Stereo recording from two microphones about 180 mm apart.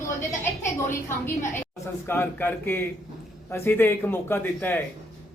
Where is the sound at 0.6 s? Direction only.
15° left (ahead or behind).